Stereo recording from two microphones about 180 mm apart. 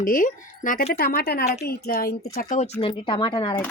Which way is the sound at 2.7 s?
30° left (ahead or behind).